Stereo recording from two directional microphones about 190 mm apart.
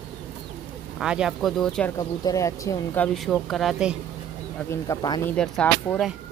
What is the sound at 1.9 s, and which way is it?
Speech, 15° left (ahead or behind).